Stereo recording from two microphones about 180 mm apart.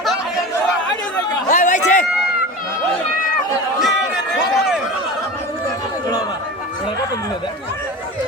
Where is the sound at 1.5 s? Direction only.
40° left (ahead or behind).